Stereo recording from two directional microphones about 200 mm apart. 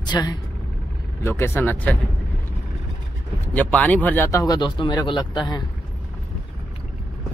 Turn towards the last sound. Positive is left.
turn(degrees=20)  # may be behind; listen again after turning